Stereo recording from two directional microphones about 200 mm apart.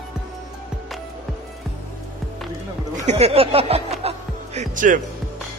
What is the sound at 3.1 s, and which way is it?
Speech, 30° right (ahead or behind).